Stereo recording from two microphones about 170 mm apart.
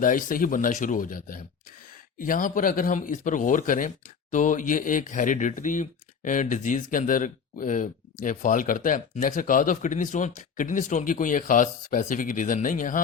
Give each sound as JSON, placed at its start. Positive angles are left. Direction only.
{"t": 0.0, "sound": "speech", "side_deg": 55}